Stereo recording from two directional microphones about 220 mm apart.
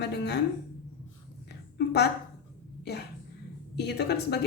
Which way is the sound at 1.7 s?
50° left (ahead or behind).